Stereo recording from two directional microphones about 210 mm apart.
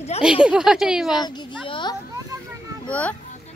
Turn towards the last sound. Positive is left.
turn(degrees=5)  # may be behind; listen again after turning